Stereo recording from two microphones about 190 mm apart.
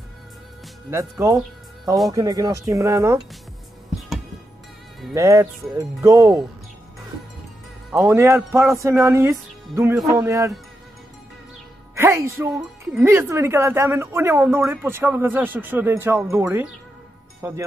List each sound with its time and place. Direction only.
0.9 s speech: 15° right (ahead or behind)
5.1 s speech: 15° right (ahead or behind)
8.1 s speech: 15° right (ahead or behind)
11.9 s speech: 15° right (ahead or behind)